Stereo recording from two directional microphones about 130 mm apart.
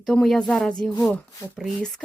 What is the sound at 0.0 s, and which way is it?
Speech, centre (ahead or behind).